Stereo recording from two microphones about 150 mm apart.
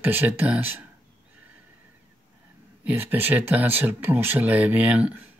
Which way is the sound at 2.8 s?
15° right (ahead or behind).